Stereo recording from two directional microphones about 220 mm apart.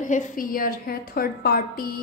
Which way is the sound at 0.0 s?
35° left (ahead or behind).